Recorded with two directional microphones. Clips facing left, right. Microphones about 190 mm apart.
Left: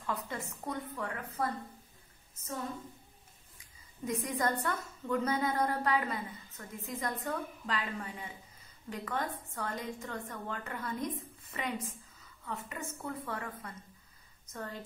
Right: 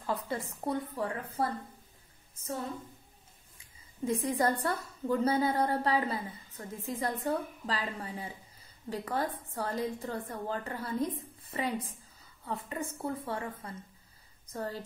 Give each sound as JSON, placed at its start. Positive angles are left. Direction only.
{"t": 0.0, "sound": "a woman's voice", "side_deg": -35}
{"t": 4.0, "sound": "a woman's voice", "side_deg": -30}